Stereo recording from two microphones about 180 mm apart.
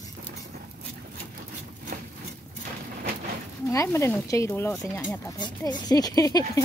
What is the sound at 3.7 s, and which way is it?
Speech, 15° left (ahead or behind).